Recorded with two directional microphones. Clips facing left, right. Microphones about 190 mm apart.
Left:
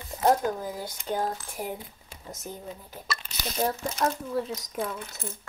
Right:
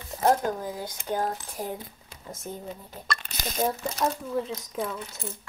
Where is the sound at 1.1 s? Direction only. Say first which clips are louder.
Right 1 dB; 10° right (ahead or behind).